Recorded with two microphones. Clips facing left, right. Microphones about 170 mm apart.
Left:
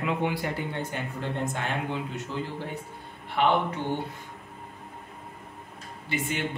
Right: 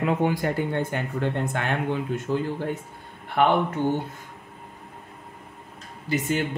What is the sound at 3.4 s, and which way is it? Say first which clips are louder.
Speech: right 3 dB; 50° right (ahead or behind).